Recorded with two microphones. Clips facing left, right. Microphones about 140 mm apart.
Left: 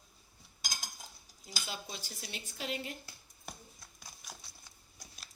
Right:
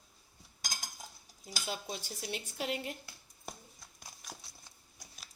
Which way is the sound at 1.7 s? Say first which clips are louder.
Right 5 dB; 55° right (ahead or behind).